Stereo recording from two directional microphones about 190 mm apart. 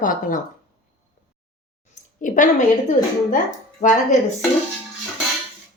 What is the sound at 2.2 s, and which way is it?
A woman's voice, 45° left (ahead or behind).